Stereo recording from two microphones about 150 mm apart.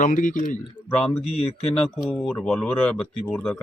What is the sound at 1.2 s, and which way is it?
Speech, 45° left (ahead or behind).